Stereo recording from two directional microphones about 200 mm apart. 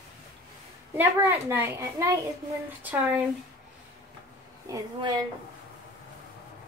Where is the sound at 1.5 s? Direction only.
10° right (ahead or behind).